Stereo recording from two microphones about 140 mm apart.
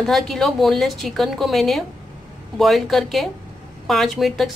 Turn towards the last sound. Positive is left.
turn(degrees=0)  # may be behind; listen again after turning